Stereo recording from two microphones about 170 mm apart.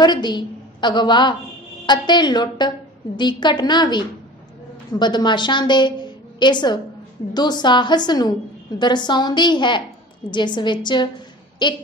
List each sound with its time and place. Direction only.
0.0 s a woman's voice: 25° left (ahead or behind)